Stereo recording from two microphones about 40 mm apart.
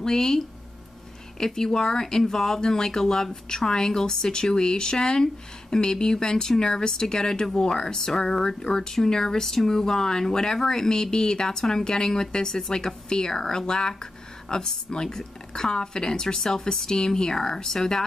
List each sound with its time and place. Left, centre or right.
0.0 s speech: centre
1.4 s speech: centre